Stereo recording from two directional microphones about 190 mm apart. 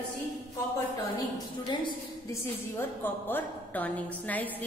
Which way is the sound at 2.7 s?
10° left (ahead or behind).